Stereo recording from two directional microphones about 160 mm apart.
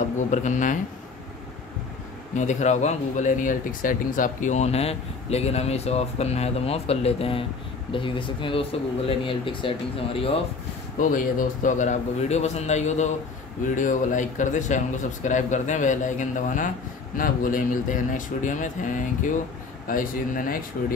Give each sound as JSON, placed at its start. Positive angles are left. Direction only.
{"t": 0.3, "sound": "speech", "side_deg": 50}
{"t": 2.3, "sound": "speech", "side_deg": 50}
{"t": 11.0, "sound": "speech", "side_deg": 55}